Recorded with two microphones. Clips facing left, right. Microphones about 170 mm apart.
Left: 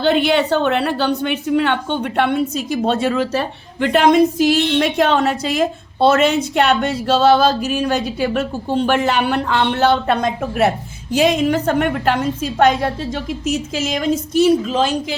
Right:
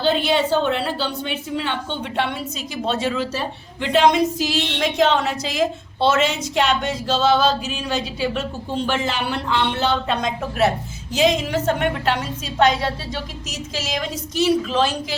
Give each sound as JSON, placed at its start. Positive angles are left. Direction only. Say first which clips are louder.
{"t": 0.0, "sound": "a woman's voice", "louder": "left 4 dB", "side_deg": 65}